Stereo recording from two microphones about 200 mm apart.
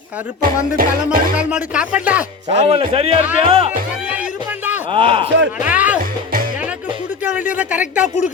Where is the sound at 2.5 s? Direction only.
30° right (ahead or behind).